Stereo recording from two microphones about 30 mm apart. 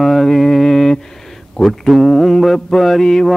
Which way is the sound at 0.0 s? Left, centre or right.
Centre.